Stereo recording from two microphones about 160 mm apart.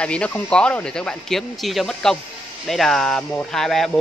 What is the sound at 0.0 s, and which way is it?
Speech, 5° left (ahead or behind).